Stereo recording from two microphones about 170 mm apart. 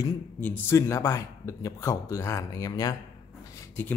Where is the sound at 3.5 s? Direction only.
15° left (ahead or behind).